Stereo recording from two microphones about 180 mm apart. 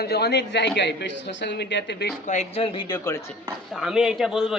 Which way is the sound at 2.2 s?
40° left (ahead or behind).